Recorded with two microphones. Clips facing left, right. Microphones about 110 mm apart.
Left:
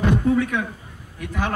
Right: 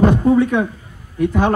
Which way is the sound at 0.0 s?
30° right (ahead or behind).